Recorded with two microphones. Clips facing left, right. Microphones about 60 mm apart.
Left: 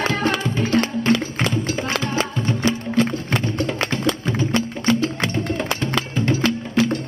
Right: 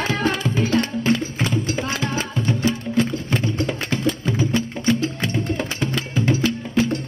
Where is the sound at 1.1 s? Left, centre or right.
Left.